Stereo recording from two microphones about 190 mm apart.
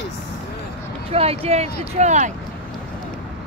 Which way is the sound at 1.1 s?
30° right (ahead or behind).